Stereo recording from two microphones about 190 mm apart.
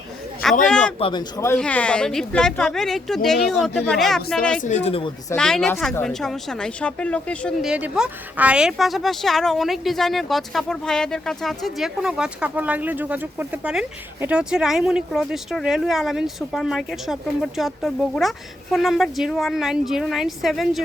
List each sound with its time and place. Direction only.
0.4 s a woman's voice: centre (ahead or behind)
0.9 s speech: 30° left (ahead or behind)
1.5 s a woman's voice: 5° left (ahead or behind)
4.6 s speech: 35° left (ahead or behind)
5.3 s a woman's voice: 5° left (ahead or behind)
7.7 s a woman's voice: 5° right (ahead or behind)